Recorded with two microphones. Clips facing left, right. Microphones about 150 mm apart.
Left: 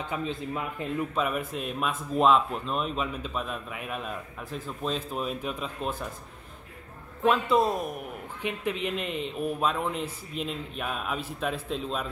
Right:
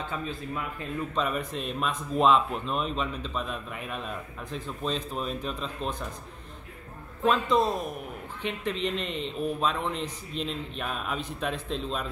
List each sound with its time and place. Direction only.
0.0 s speech: 20° left (ahead or behind)
1.1 s speech: 5° left (ahead or behind)
7.2 s a man's voice: 10° left (ahead or behind)